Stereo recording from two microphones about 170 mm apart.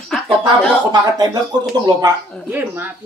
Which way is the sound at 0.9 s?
25° right (ahead or behind).